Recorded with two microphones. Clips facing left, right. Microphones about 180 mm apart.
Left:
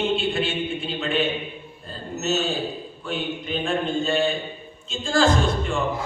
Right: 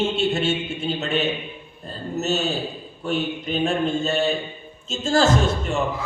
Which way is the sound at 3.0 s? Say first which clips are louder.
Right 5 dB; 45° right (ahead or behind).